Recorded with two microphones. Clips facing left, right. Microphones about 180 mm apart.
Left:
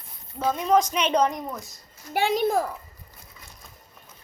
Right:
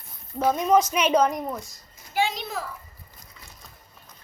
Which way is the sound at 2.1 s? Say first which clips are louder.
Left 5 dB; 55° left (ahead or behind).